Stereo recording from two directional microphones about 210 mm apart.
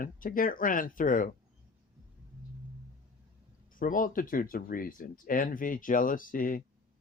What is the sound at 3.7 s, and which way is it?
Speech, 40° left (ahead or behind).